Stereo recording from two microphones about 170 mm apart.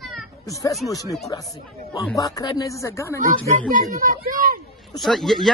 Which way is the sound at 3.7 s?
55° right (ahead or behind).